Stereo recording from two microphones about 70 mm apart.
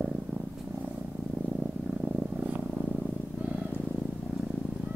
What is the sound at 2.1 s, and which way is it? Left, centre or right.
Purr, right.